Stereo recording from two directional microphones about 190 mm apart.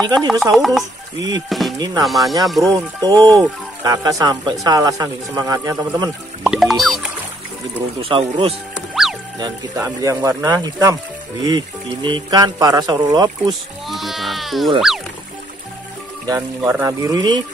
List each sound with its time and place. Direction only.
0.0 s speech: 20° right (ahead or behind)
0.6 s music: centre (ahead or behind)
2.7 s speech: 20° right (ahead or behind)
6.4 s music: centre (ahead or behind)
8.0 s speech: 30° right (ahead or behind)
9.0 s music: centre (ahead or behind)
9.4 s speech: 15° right (ahead or behind)
13.8 s sheep: centre (ahead or behind)
16.3 s speech: 10° right (ahead or behind)